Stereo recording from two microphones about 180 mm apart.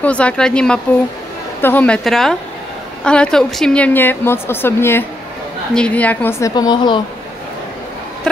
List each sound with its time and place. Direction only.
0.0 s a woman's voice: 5° left (ahead or behind)
6.5 s a woman's voice: 25° left (ahead or behind)